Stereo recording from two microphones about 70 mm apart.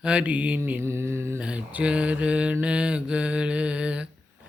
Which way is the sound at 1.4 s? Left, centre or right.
Centre.